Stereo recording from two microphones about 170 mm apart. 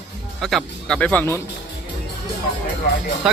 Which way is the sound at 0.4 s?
5° left (ahead or behind).